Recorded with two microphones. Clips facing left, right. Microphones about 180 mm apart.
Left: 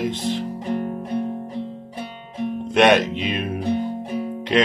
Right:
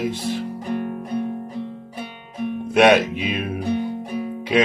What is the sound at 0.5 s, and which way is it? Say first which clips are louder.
Music: left 1 dB; 30° left (ahead or behind).